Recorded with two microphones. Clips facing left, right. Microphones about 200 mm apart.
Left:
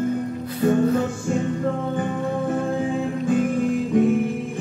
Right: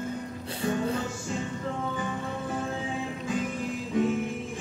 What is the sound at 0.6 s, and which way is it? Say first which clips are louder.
Music: left 10 dB; 50° left (ahead or behind).